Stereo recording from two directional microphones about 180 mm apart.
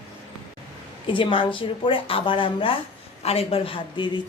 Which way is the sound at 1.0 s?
30° left (ahead or behind).